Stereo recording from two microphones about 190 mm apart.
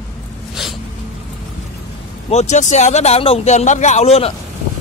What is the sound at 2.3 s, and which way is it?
A man's voice, 35° left (ahead or behind).